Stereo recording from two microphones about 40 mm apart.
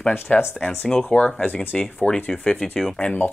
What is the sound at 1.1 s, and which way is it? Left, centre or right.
Speech, left.